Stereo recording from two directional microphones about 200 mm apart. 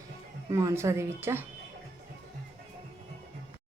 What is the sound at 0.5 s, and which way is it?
Speech, 15° right (ahead or behind).